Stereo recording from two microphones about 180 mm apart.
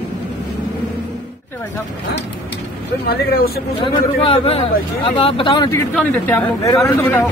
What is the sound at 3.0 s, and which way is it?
Speech, 60° left (ahead or behind).